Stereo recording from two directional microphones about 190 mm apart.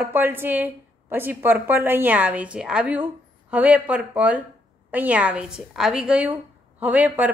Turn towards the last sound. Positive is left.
turn(degrees=-10)  # may be behind; listen again after turning